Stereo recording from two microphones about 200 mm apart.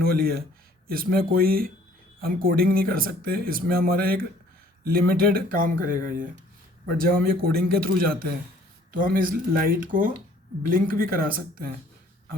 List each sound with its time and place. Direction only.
0.0 s speech: 50° right (ahead or behind)